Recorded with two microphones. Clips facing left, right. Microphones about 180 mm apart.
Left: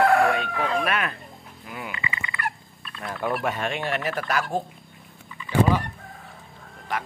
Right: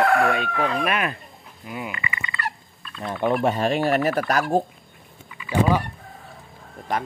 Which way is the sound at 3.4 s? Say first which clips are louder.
Right 6 dB; 35° right (ahead or behind).